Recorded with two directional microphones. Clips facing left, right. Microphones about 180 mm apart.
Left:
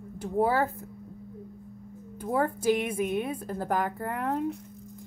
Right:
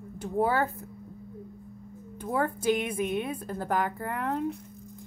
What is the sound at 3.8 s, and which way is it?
Speech, 35° left (ahead or behind).